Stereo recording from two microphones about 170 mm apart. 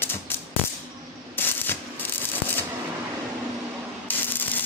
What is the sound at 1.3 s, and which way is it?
Rub, 10° left (ahead or behind).